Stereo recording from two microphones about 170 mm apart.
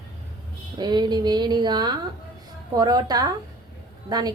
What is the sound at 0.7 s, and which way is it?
Speech, 25° right (ahead or behind).